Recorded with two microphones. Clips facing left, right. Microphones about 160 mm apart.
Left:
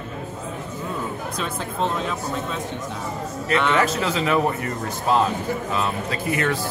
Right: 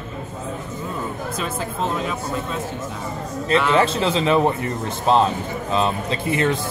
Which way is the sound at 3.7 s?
30° right (ahead or behind).